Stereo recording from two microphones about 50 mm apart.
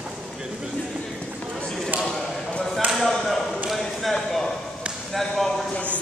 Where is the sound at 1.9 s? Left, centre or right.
Right.